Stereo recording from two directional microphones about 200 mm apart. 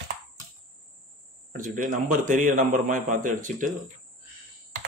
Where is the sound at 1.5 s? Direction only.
40° right (ahead or behind).